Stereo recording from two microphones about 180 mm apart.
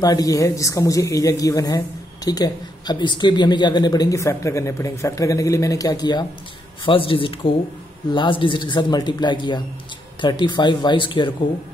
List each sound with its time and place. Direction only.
0.0 s a woman's voice: 20° left (ahead or behind)